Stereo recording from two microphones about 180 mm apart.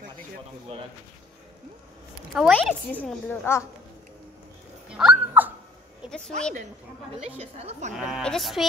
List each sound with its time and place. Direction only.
2.3 s a woman's voice: centre (ahead or behind)
4.8 s a sound: 5° right (ahead or behind)
6.0 s a woman's voice: 5° left (ahead or behind)
7.2 s a woman's voice: 35° right (ahead or behind)
7.9 s speech: centre (ahead or behind)